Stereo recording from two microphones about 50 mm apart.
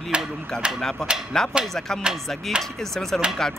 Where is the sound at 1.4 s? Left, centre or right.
Centre.